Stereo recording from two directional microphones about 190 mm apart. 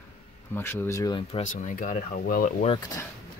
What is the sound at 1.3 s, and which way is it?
Speech, 40° left (ahead or behind).